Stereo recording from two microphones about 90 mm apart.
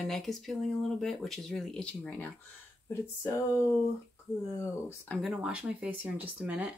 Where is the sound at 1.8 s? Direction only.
15° left (ahead or behind).